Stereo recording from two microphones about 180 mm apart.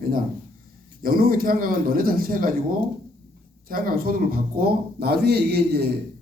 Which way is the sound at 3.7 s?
55° right (ahead or behind).